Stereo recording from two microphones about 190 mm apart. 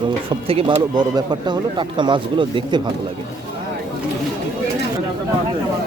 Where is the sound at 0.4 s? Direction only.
30° right (ahead or behind).